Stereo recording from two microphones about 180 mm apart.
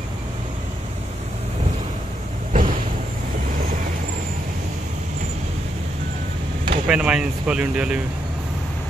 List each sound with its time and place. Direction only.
2.5 s vehicle: 45° right (ahead or behind)
6.9 s speech: 5° right (ahead or behind)